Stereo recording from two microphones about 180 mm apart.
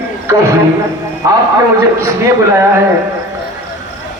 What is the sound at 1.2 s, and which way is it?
Speech, 20° right (ahead or behind).